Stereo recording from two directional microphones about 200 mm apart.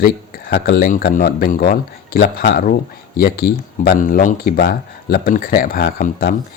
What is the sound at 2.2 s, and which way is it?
Speech, 55° left (ahead or behind).